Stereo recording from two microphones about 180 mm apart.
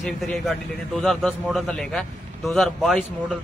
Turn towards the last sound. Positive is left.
turn(degrees=0)  # may be behind; listen again after turning